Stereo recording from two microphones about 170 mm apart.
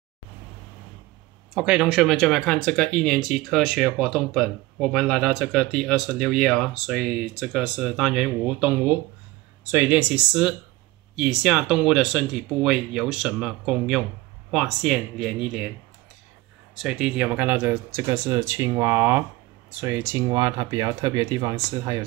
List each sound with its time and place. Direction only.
1.5 s speech: 5° right (ahead or behind)
16.7 s speech: 5° right (ahead or behind); by 21.5 s 25° right (ahead or behind)